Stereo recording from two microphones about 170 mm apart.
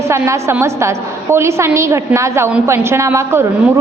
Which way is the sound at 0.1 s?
15° right (ahead or behind).